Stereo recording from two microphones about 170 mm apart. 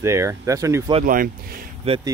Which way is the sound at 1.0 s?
55° right (ahead or behind).